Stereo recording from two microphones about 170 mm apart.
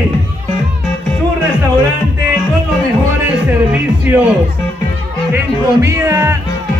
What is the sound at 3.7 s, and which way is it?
Speech, 10° right (ahead or behind).